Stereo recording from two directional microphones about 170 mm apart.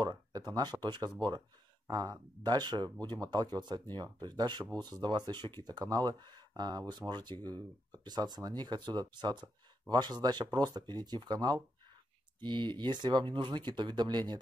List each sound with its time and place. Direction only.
0.0 s speech: 25° right (ahead or behind)